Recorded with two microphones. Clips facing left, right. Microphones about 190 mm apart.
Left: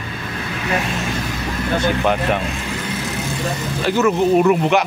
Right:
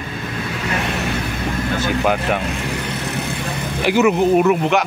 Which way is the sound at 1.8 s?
5° right (ahead or behind).